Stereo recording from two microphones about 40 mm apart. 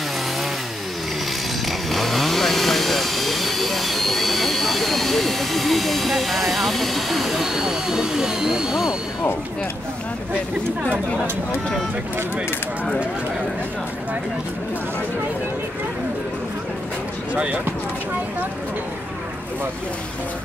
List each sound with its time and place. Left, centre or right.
1.7 s chainsaw: centre
17.3 s speech: right